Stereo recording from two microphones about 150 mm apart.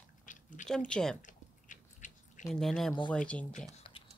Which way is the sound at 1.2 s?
55° left (ahead or behind).